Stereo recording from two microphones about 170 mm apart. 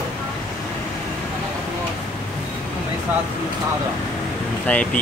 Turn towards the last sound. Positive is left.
turn(degrees=5)  # may be behind; listen again after turning